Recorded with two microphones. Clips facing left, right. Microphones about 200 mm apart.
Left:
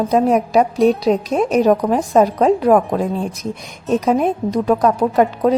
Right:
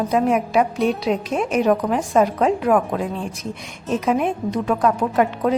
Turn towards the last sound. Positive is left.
turn(degrees=35)  # may be behind; listen again after turning